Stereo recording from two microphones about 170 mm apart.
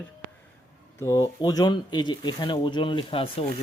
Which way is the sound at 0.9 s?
15° left (ahead or behind).